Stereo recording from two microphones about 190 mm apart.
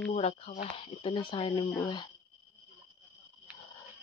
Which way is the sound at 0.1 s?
35° left (ahead or behind).